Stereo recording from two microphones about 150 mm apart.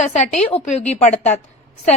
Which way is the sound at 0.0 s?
50° left (ahead or behind).